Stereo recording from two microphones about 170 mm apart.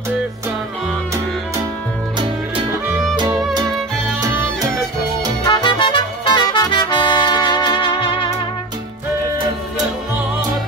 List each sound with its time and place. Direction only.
5.5 s music: 25° left (ahead or behind)